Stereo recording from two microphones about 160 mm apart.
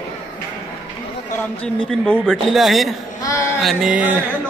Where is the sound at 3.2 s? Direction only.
20° left (ahead or behind).